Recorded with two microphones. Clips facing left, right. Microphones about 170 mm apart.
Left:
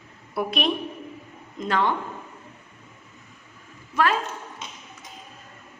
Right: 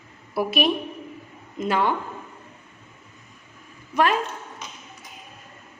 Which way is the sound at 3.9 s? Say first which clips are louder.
Right 2 dB; 20° right (ahead or behind).